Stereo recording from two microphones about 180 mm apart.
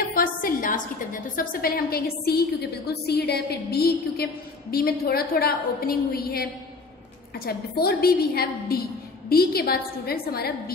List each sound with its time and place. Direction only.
0.1 s a woman's voice: 50° left (ahead or behind)